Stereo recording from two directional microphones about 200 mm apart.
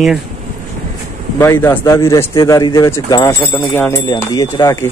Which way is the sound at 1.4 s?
10° left (ahead or behind).